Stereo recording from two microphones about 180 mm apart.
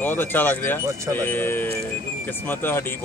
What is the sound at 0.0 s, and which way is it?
Speech, 10° left (ahead or behind).